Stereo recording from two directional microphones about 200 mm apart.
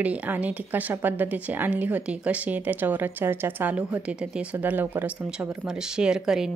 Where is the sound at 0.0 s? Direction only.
5° right (ahead or behind).